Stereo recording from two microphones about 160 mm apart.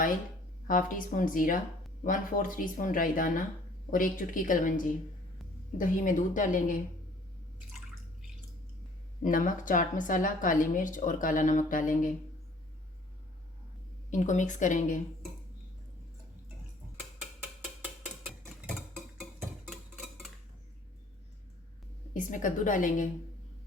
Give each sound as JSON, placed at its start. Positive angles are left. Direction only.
{"t": 0.7, "sound": "a woman's voice", "side_deg": 55}
{"t": 9.2, "sound": "a woman's voice", "side_deg": 55}
{"t": 14.1, "sound": "a woman's voice", "side_deg": 50}
{"t": 19.6, "sound": "a sound", "side_deg": 0}
{"t": 22.1, "sound": "a woman's voice", "side_deg": 55}